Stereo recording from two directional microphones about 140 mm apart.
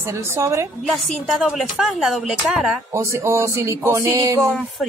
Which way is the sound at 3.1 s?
20° right (ahead or behind).